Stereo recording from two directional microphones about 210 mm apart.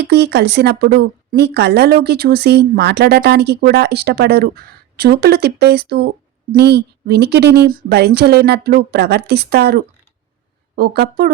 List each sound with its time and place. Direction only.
0.0 s a woman's voice: 50° right (ahead or behind)